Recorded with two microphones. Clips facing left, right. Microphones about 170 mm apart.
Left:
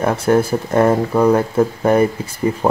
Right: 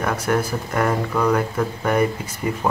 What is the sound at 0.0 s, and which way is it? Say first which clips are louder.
Speech: left 6 dB; 30° left (ahead or behind).